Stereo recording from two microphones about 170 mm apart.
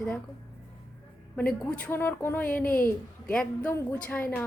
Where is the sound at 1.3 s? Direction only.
5° left (ahead or behind).